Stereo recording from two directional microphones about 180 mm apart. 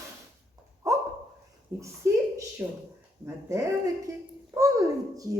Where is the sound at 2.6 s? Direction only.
10° right (ahead or behind).